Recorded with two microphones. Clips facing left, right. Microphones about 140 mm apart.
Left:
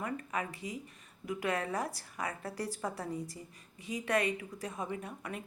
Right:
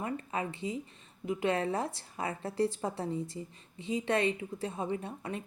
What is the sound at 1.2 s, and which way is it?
A woman's voice, 25° right (ahead or behind).